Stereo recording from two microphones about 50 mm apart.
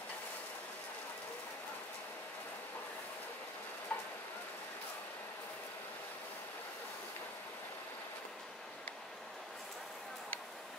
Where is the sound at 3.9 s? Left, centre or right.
Left.